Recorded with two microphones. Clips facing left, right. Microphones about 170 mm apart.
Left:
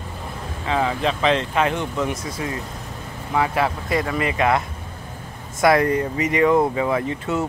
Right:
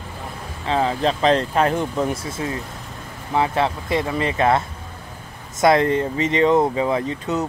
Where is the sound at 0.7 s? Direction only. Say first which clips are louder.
Right 2 dB; 30° right (ahead or behind).